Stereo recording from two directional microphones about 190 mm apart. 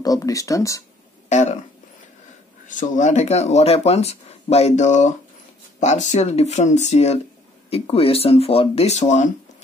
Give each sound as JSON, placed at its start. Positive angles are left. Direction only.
{"t": 0.0, "sound": "speech", "side_deg": 20}
{"t": 1.3, "sound": "speech", "side_deg": 35}
{"t": 2.8, "sound": "speech", "side_deg": 40}